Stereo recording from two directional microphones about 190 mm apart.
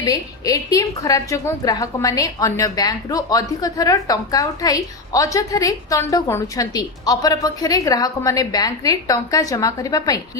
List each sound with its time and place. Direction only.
0.0 s a woman's voice: 20° left (ahead or behind)